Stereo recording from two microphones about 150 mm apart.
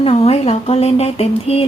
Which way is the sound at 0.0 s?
40° left (ahead or behind).